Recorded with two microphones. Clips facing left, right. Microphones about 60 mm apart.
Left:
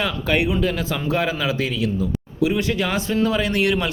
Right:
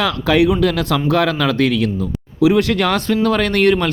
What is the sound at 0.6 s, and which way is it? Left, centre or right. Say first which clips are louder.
Speech: right 6 dB; right.